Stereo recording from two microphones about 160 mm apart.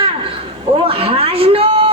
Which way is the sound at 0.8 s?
35° right (ahead or behind).